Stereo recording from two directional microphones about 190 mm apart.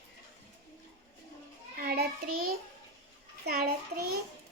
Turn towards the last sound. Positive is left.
turn(degrees=-55)  # may be behind; listen again after turning